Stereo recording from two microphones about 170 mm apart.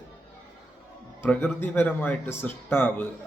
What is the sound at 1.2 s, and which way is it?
Speech, 15° left (ahead or behind).